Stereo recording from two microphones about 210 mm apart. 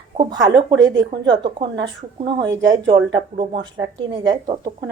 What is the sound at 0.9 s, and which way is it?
Speech, 55° right (ahead or behind).